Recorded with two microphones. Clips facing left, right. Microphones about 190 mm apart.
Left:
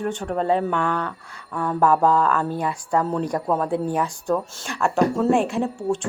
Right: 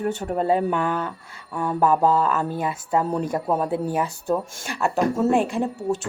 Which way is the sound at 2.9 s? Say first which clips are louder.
Even; 15° right (ahead or behind).